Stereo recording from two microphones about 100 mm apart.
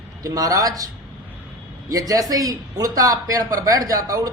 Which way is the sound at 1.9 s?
35° right (ahead or behind).